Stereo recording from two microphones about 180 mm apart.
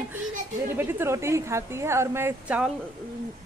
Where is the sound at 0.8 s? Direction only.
10° right (ahead or behind).